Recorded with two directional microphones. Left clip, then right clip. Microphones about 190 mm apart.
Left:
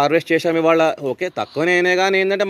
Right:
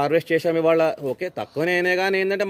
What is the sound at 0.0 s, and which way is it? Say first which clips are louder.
A man's voice: left 4 dB; 20° left (ahead or behind).